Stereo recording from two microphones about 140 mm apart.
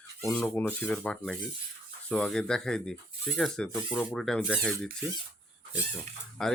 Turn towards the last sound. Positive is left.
turn(degrees=5)  # may be behind; listen again after turning